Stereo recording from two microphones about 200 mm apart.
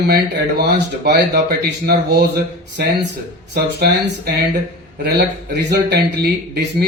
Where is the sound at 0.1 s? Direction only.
55° right (ahead or behind).